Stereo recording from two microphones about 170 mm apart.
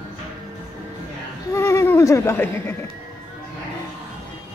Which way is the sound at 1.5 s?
15° left (ahead or behind).